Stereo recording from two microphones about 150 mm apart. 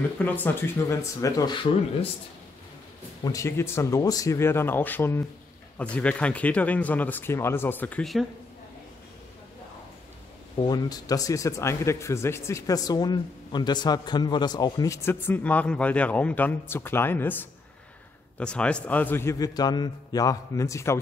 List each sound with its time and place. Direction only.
0.2 s speech: 15° left (ahead or behind); by 2.0 s 35° left (ahead or behind)
3.3 s speech: 20° left (ahead or behind); by 8.3 s centre (ahead or behind)
10.6 s speech: 25° left (ahead or behind)